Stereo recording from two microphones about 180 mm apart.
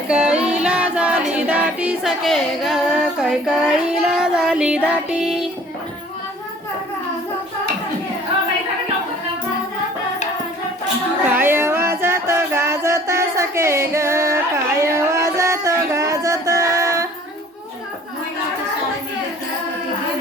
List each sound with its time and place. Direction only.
0.1 s female singing: 5° right (ahead or behind)
1.3 s music: 10° right (ahead or behind)
11.3 s music: 10° right (ahead or behind)